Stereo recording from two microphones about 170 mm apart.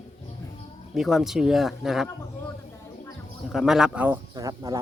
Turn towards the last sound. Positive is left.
turn(degrees=-20)  # may be behind; listen again after turning